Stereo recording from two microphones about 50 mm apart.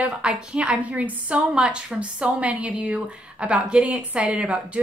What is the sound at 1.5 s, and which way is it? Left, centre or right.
A woman's voice, centre.